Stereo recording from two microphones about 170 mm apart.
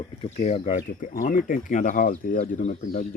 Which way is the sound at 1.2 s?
50° left (ahead or behind).